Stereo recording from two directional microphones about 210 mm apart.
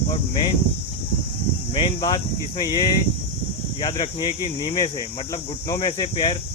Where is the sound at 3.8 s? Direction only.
20° left (ahead or behind).